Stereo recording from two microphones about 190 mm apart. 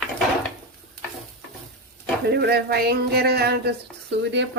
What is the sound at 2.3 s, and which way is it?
Speech, 55° right (ahead or behind).